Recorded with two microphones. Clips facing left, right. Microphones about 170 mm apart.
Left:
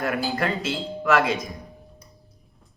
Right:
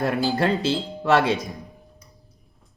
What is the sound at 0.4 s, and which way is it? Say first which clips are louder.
Speech: right 4 dB; 30° right (ahead or behind).